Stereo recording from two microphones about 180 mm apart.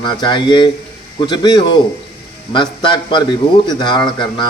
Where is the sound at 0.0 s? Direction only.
25° left (ahead or behind).